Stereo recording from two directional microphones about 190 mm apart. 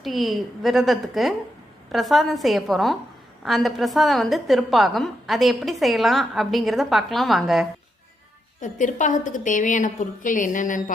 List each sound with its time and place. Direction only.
0.0 s a woman's voice: centre (ahead or behind)
8.6 s a woman's voice: 40° left (ahead or behind)